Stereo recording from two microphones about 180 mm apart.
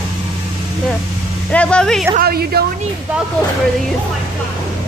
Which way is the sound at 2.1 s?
60° right (ahead or behind).